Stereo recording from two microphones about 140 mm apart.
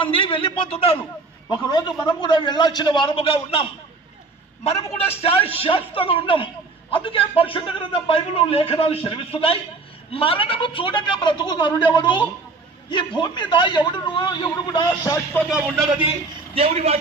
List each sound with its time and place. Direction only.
0.3 s speech: 40° left (ahead or behind)
1.5 s a man's voice: 30° left (ahead or behind)
15.4 s speech: centre (ahead or behind)
16.6 s a man's voice: 45° right (ahead or behind)